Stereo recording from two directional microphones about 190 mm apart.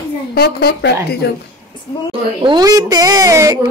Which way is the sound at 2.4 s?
20° right (ahead or behind).